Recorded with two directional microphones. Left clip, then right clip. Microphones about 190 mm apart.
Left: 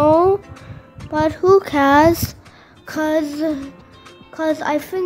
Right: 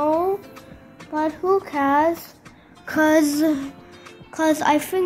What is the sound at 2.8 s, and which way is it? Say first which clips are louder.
Speech: right 2 dB; 5° right (ahead or behind).